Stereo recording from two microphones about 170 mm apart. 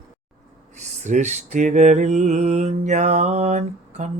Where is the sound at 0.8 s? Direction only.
45° right (ahead or behind).